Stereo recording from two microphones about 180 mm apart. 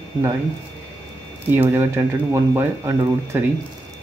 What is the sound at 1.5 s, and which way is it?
Speech, 10° right (ahead or behind).